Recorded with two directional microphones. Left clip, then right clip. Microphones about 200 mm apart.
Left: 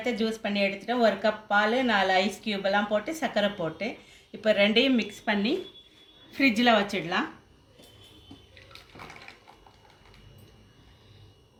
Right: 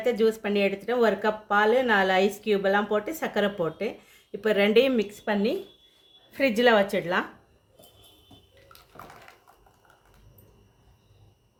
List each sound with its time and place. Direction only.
0.0 s speech: 50° right (ahead or behind)